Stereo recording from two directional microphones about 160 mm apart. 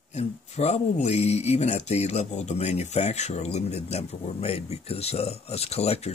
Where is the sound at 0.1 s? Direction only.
45° left (ahead or behind).